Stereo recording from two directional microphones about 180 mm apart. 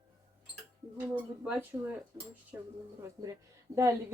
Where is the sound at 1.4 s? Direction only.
10° right (ahead or behind).